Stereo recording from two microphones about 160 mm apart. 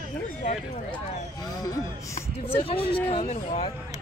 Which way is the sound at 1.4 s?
20° left (ahead or behind).